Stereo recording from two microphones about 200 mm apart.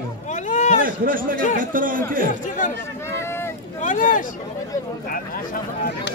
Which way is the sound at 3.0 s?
15° left (ahead or behind).